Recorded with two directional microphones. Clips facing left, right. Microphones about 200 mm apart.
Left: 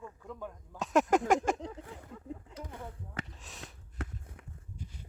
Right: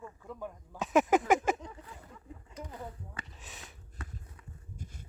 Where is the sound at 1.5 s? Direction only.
65° left (ahead or behind).